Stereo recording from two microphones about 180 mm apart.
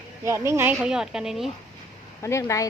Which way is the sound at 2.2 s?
15° left (ahead or behind).